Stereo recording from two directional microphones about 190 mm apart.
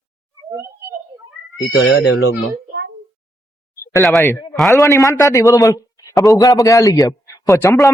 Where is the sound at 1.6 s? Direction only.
75° left (ahead or behind).